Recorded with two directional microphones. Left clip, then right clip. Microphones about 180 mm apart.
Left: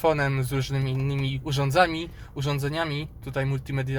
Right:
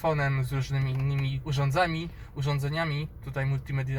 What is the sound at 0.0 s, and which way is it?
Speech, 60° left (ahead or behind).